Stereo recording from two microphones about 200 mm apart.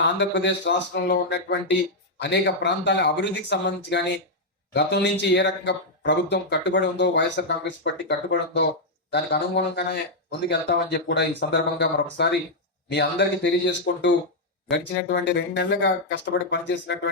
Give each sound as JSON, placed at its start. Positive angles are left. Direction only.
{"t": 0.0, "sound": "speech", "side_deg": 60}